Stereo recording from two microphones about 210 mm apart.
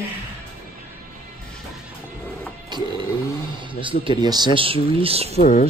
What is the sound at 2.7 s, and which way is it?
Music, 20° right (ahead or behind).